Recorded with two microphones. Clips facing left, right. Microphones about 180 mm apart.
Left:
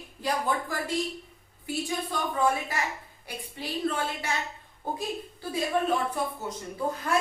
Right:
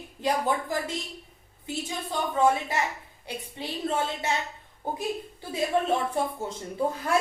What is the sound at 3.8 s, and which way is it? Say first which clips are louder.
Speech: right 1 dB; 20° right (ahead or behind).